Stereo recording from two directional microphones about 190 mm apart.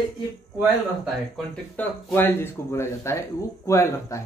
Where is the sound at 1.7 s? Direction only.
10° left (ahead or behind).